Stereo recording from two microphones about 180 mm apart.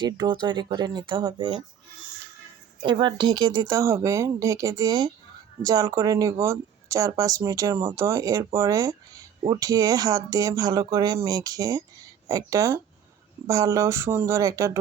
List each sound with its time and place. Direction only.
0.0 s speech: 25° right (ahead or behind)
2.8 s speech: 25° right (ahead or behind)